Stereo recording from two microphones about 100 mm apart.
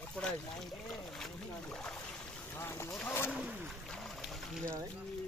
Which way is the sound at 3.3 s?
10° right (ahead or behind).